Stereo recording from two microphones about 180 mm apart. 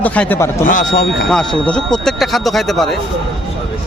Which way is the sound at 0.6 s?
45° left (ahead or behind).